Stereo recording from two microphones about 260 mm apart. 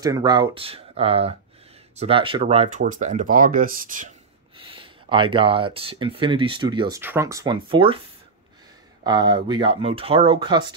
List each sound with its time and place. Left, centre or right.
0.0 s speech: centre; by 4.1 s right
4.6 s speech: centre
9.0 s speech: centre